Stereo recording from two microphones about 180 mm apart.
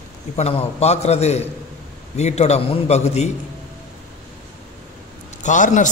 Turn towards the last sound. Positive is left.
turn(degrees=45)  # may be behind; listen again after turning